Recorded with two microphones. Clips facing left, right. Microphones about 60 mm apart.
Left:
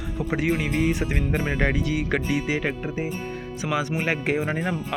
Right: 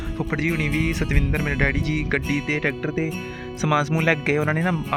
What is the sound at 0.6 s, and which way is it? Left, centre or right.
Speech, right.